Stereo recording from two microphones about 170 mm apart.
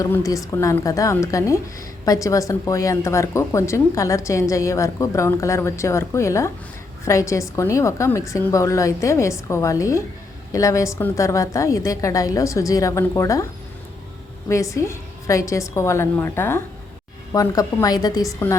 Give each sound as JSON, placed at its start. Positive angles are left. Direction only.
{"t": 0.0, "sound": "a woman's voice", "side_deg": 20}